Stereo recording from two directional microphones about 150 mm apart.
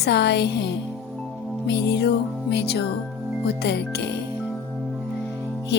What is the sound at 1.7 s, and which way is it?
Music, 90° left.